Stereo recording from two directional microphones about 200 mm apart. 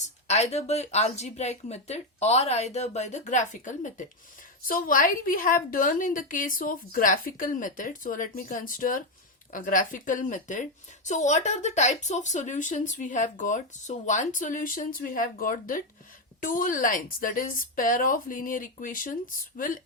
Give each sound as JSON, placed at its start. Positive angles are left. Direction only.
{"t": 0.0, "sound": "a woman's voice", "side_deg": 35}